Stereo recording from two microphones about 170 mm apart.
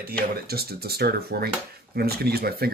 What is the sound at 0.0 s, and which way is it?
Speech, 65° right (ahead or behind).